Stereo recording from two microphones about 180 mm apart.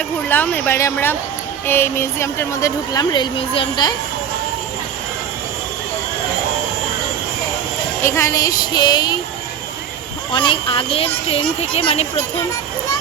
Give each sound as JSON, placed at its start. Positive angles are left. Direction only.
{"t": 0.3, "sound": "a woman's voice", "side_deg": 10}
{"t": 8.0, "sound": "speech", "side_deg": 15}
{"t": 10.3, "sound": "speech", "side_deg": 30}